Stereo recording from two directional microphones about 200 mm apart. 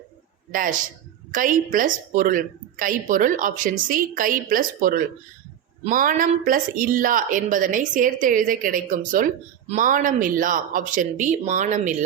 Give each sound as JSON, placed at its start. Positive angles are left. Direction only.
{"t": 0.5, "sound": "a woman's voice", "side_deg": -40}